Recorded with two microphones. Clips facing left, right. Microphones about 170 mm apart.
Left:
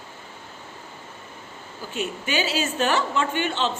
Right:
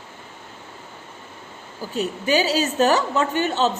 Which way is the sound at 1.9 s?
35° right (ahead or behind).